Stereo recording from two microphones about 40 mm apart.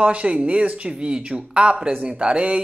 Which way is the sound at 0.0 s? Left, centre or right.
Right.